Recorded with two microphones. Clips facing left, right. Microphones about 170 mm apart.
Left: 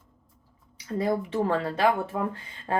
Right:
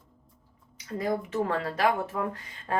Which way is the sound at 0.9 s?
30° left (ahead or behind).